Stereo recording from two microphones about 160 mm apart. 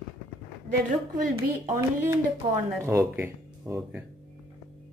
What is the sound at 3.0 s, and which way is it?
Speech, 10° right (ahead or behind).